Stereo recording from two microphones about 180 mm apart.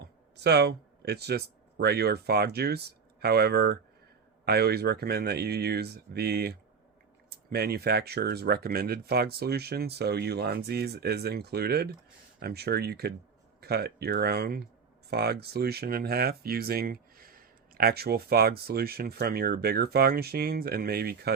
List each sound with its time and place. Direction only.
0.4 s speech: 65° right (ahead or behind)